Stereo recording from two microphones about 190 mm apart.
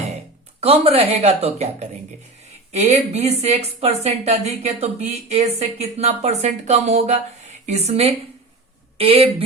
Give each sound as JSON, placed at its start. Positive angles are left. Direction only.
{"t": 0.6, "sound": "a woman's voice", "side_deg": -30}